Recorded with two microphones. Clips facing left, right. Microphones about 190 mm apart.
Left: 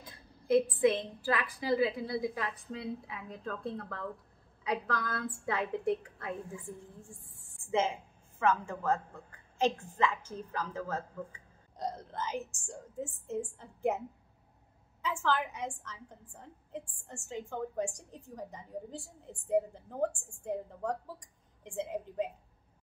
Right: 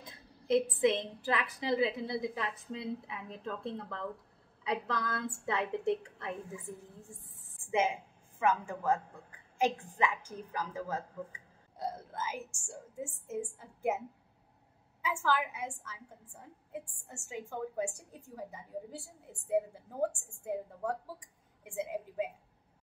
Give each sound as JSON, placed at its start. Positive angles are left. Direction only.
{"t": 0.0, "sound": "a woman's voice", "side_deg": -20}